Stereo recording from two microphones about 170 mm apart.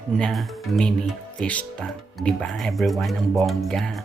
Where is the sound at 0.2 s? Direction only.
5° left (ahead or behind).